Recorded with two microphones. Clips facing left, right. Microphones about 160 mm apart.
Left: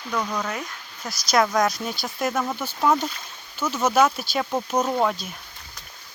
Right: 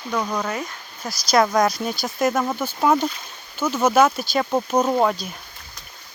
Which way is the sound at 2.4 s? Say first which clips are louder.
Right 2 dB; 15° right (ahead or behind).